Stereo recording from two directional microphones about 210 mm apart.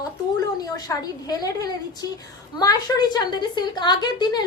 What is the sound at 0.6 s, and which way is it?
A woman's voice, 20° left (ahead or behind).